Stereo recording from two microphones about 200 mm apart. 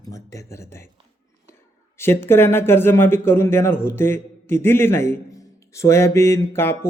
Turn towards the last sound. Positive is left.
turn(degrees=10)  # may be behind; listen again after turning